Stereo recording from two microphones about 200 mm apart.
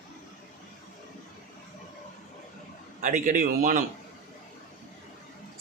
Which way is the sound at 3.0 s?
40° right (ahead or behind).